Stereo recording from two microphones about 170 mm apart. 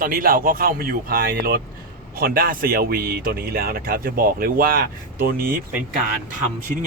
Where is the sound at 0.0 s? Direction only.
55° right (ahead or behind).